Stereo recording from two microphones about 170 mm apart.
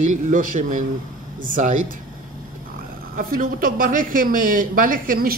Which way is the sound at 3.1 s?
55° right (ahead or behind).